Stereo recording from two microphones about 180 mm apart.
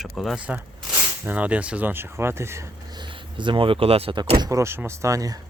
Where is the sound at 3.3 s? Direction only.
25° right (ahead or behind).